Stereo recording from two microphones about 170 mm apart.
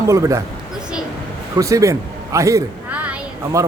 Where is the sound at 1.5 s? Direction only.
20° right (ahead or behind).